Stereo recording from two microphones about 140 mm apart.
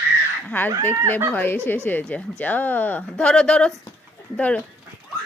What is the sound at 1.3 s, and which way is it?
Speech, 15° left (ahead or behind).